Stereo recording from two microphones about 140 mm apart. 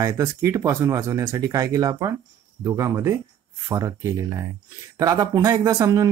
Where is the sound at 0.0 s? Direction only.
25° right (ahead or behind).